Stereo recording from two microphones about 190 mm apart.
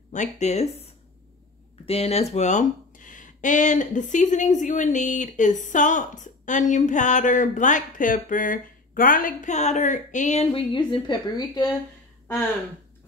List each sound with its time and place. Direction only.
0.1 s speech: 40° left (ahead or behind)
1.9 s speech: 30° left (ahead or behind)